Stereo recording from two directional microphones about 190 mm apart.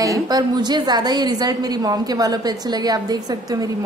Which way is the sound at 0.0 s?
20° right (ahead or behind).